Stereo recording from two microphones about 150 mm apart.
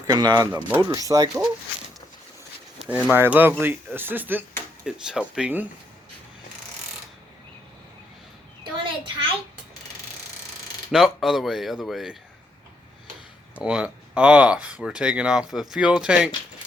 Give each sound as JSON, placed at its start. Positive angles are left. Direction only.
{"t": 0.1, "sound": "speech", "side_deg": -30}
{"t": 2.7, "sound": "speech", "side_deg": -5}
{"t": 8.6, "sound": "a sound", "side_deg": -35}
{"t": 10.9, "sound": "speech", "side_deg": 0}
{"t": 13.6, "sound": "speech", "side_deg": -5}